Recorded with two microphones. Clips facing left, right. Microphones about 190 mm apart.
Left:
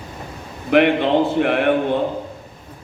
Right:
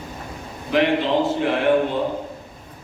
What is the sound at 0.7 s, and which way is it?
Speech, 60° left (ahead or behind).